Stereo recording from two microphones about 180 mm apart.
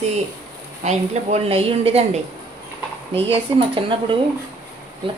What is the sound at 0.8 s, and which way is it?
A woman's voice, 40° right (ahead or behind).